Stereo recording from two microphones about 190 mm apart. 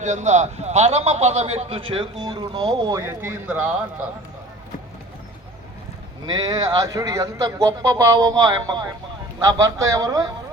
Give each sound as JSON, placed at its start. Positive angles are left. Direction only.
{"t": 0.0, "sound": "a man's voice", "side_deg": -40}
{"t": 6.5, "sound": "a man's voice", "side_deg": -20}